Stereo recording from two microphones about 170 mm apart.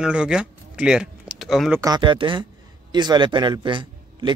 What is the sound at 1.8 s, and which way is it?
A man's voice, 25° right (ahead or behind).